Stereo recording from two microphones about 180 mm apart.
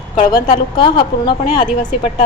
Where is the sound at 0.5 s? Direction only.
25° left (ahead or behind).